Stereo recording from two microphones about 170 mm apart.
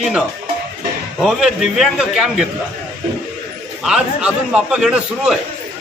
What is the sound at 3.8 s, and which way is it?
A man's voice, 5° right (ahead or behind).